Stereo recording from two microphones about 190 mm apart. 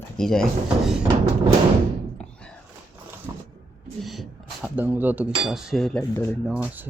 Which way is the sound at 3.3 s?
15° right (ahead or behind).